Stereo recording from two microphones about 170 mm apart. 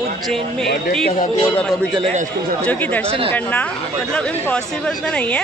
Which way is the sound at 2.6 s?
10° left (ahead or behind).